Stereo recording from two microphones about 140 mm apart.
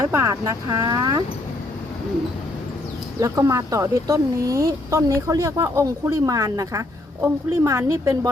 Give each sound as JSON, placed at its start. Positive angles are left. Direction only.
{"t": 0.0, "sound": "speech", "side_deg": -20}
{"t": 3.2, "sound": "speech", "side_deg": -25}